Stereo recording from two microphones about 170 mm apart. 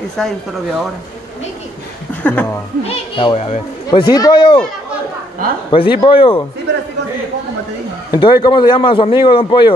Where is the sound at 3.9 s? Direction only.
25° left (ahead or behind).